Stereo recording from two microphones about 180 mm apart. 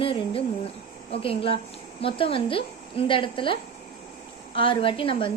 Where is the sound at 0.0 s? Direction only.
30° left (ahead or behind).